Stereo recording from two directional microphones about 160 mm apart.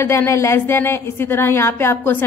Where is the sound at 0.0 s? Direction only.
15° left (ahead or behind).